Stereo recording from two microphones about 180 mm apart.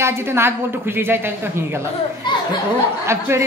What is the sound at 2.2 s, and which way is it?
Speech, 25° left (ahead or behind).